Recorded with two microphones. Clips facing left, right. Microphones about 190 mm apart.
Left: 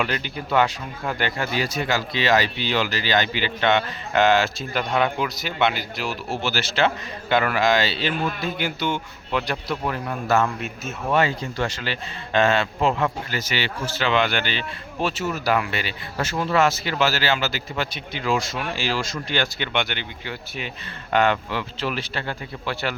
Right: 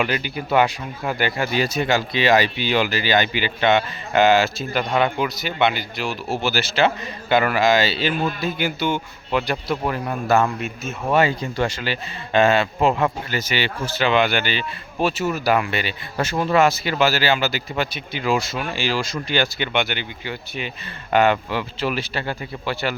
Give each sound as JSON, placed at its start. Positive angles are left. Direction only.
{"t": 0.0, "sound": "speech", "side_deg": -5}
{"t": 1.5, "sound": "speech", "side_deg": -25}
{"t": 6.4, "sound": "a man's voice", "side_deg": -10}
{"t": 10.6, "sound": "speech", "side_deg": -5}